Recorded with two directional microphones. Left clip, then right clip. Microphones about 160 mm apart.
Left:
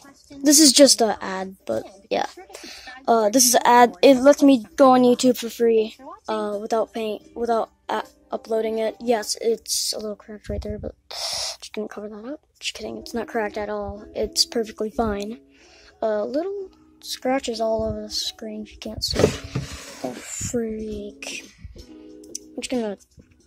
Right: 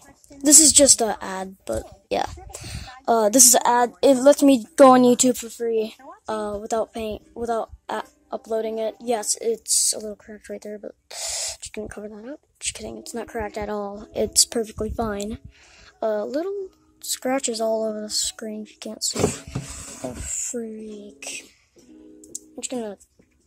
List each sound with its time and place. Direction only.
0.6 s speech: 15° left (ahead or behind)
0.8 s a woman's voice: centre (ahead or behind)
2.1 s a sound: 15° right (ahead or behind)
3.3 s speech: 20° right (ahead or behind)
4.0 s speech: 5° right (ahead or behind)
4.7 s speech: 25° right (ahead or behind)
5.8 s a woman's voice: 5° right (ahead or behind)
13.7 s a woman's voice: 20° right (ahead or behind); by 21.5 s centre (ahead or behind)
22.3 s music: 10° left (ahead or behind)